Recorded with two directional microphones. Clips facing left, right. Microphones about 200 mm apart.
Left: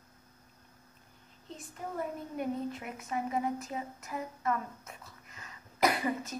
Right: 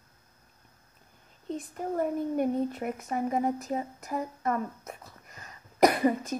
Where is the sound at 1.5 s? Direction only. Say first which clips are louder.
Right 7 dB; 50° right (ahead or behind).